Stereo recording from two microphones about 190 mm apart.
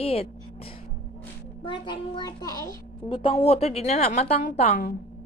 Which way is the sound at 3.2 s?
30° left (ahead or behind).